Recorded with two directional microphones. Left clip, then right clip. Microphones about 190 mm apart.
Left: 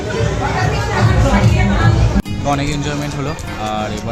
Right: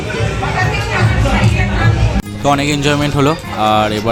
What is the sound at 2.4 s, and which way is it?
Speech, 45° right (ahead or behind).